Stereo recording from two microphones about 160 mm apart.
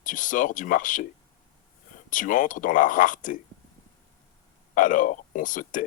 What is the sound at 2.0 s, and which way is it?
Speech, 55° left (ahead or behind).